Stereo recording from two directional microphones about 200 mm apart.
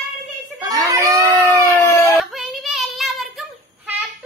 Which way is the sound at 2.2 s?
Centre (ahead or behind).